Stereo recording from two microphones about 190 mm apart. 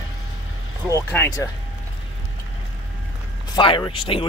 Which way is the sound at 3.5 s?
25° left (ahead or behind).